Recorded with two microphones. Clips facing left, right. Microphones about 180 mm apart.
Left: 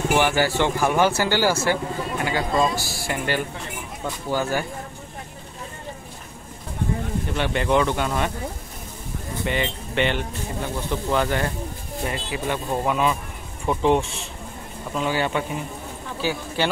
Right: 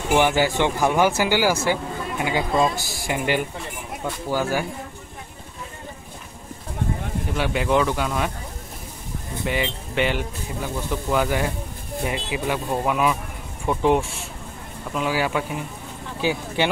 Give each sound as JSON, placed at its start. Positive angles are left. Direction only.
{"t": 0.1, "sound": "speech", "side_deg": -20}
{"t": 7.3, "sound": "speech", "side_deg": -5}
{"t": 9.4, "sound": "speech", "side_deg": -5}
{"t": 16.2, "sound": "speech", "side_deg": -20}